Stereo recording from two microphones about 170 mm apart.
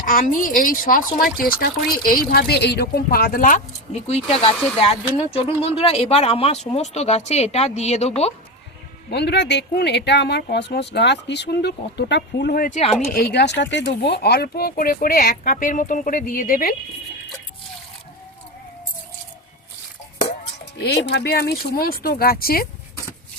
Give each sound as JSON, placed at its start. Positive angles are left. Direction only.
{"t": 0.0, "sound": "speech", "side_deg": 55}
{"t": 3.9, "sound": "speech", "side_deg": 40}
{"t": 9.0, "sound": "speech", "side_deg": 80}
{"t": 13.1, "sound": "speech", "side_deg": 65}
{"t": 20.7, "sound": "speech", "side_deg": 80}